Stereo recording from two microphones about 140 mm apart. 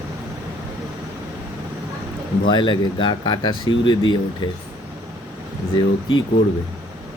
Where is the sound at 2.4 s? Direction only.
35° left (ahead or behind).